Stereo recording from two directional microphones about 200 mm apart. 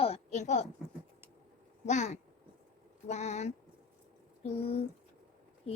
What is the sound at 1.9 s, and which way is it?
Speech, 35° left (ahead or behind).